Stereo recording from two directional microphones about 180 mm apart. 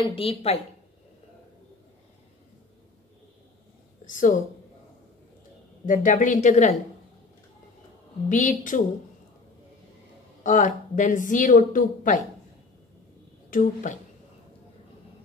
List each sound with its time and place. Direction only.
0.1 s a woman's voice: 30° left (ahead or behind)
4.0 s a woman's voice: 45° left (ahead or behind)
5.9 s a woman's voice: 50° left (ahead or behind)
8.3 s a woman's voice: 45° left (ahead or behind)
10.4 s a woman's voice: 45° left (ahead or behind)
13.5 s a woman's voice: 45° left (ahead or behind)